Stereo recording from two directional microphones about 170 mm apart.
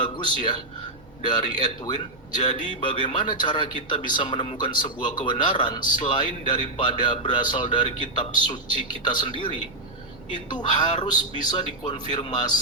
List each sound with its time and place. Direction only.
0.0 s speech: 25° left (ahead or behind)
10.5 s speech: 25° left (ahead or behind)